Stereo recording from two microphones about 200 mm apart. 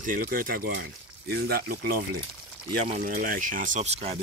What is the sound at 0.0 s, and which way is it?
Speech, 45° right (ahead or behind).